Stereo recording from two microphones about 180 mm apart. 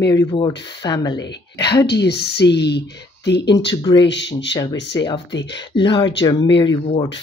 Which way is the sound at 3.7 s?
20° left (ahead or behind).